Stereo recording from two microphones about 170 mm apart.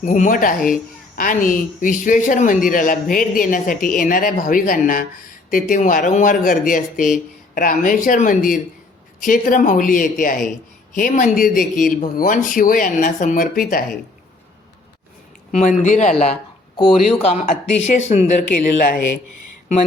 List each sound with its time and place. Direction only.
0.0 s a woman's voice: 50° left (ahead or behind)
15.5 s a woman's voice: 45° left (ahead or behind)